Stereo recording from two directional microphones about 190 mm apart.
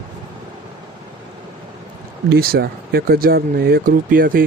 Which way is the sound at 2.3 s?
55° right (ahead or behind).